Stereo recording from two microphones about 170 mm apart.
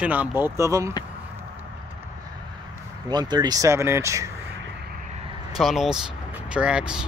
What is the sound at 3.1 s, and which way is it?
Speech, 25° right (ahead or behind).